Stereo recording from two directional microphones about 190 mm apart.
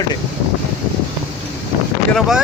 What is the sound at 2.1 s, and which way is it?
Speech, centre (ahead or behind).